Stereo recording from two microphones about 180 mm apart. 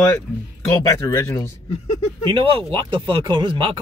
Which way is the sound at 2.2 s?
30° right (ahead or behind).